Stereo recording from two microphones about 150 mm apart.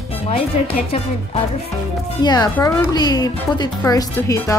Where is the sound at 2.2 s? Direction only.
30° left (ahead or behind).